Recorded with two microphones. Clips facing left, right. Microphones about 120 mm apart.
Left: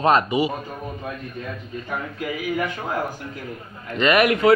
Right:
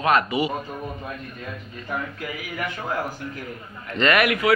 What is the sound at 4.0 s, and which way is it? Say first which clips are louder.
Speech: left 2 dB; 20° left (ahead or behind).